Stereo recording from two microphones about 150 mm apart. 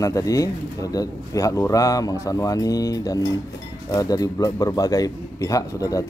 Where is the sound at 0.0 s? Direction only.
20° left (ahead or behind).